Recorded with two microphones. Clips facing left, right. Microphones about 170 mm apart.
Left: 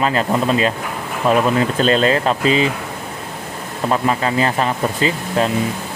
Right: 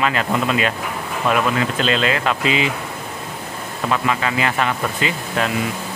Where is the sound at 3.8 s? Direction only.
35° left (ahead or behind).